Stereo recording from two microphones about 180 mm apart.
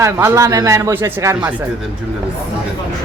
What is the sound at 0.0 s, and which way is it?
Speech, 15° right (ahead or behind).